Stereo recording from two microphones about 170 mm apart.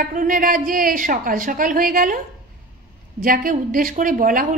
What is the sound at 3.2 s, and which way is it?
A woman's voice, 55° right (ahead or behind).